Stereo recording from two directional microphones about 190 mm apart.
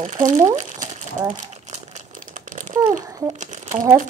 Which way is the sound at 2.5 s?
45° right (ahead or behind).